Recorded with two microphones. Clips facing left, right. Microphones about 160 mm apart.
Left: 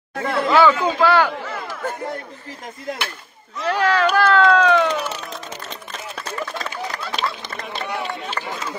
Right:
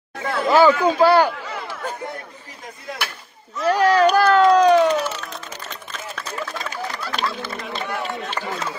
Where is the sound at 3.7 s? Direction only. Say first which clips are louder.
Right 2 dB; 10° right (ahead or behind).